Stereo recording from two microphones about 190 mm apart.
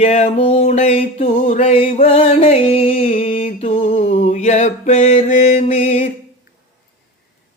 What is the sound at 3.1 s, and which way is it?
Music, 45° left (ahead or behind).